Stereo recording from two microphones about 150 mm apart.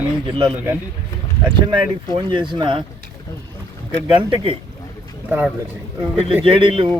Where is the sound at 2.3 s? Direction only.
30° right (ahead or behind).